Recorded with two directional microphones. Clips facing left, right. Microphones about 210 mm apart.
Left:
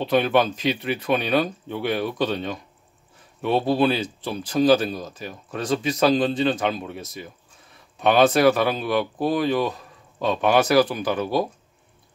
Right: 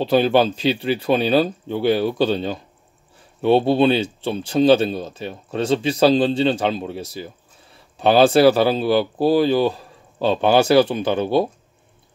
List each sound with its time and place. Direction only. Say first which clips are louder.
0.0 s speech: right 4 dB; 30° right (ahead or behind)